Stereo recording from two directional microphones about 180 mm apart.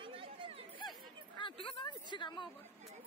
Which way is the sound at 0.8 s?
25° left (ahead or behind).